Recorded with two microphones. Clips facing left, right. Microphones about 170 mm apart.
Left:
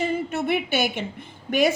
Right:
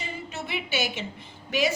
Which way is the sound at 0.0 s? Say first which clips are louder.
Left 11 dB; 55° left (ahead or behind).